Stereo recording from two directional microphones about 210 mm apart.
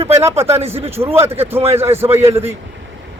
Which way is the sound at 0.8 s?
30° right (ahead or behind).